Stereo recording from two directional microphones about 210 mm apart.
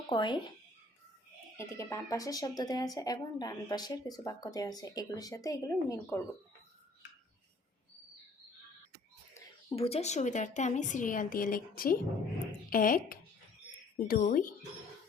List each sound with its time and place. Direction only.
0.1 s speech: 20° left (ahead or behind)
1.5 s speech: 15° left (ahead or behind)
9.3 s a sound: 15° left (ahead or behind)
9.7 s a woman's voice: 30° left (ahead or behind)